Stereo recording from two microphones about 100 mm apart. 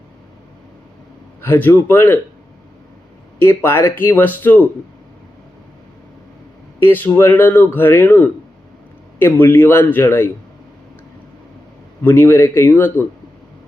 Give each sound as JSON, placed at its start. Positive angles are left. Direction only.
{"t": 1.4, "sound": "speech", "side_deg": 20}
{"t": 3.6, "sound": "speech", "side_deg": 25}
{"t": 6.8, "sound": "speech", "side_deg": 20}
{"t": 12.0, "sound": "speech", "side_deg": 25}